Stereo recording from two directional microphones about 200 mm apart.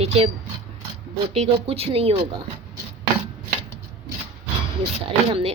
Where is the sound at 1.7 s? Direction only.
30° right (ahead or behind).